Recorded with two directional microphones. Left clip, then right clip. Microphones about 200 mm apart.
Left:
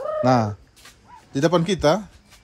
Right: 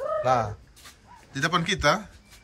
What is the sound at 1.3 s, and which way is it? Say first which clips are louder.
Speech: left 5 dB; 30° left (ahead or behind).